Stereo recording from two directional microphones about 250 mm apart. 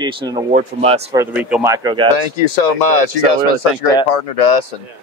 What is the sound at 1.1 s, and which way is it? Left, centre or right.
Speech, centre.